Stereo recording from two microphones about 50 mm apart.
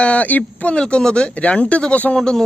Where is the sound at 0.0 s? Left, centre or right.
Left.